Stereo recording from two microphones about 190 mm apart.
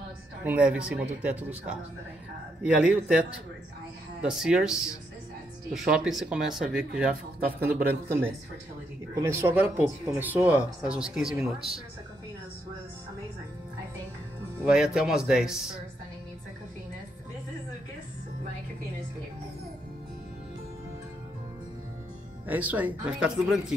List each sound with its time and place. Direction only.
0.4 s speech: 5° right (ahead or behind)
9.1 s speech: 15° right (ahead or behind)
14.6 s speech: 5° right (ahead or behind)
22.5 s speech: 10° right (ahead or behind)